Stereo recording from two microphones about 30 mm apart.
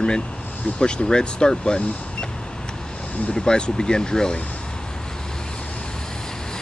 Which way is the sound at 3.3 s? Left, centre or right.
Left.